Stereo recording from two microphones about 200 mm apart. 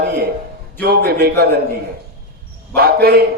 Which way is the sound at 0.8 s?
50° right (ahead or behind).